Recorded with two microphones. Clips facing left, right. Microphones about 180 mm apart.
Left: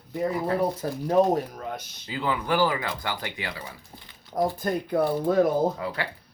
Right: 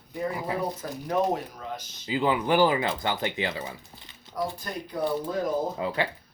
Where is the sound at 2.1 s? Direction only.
20° right (ahead or behind).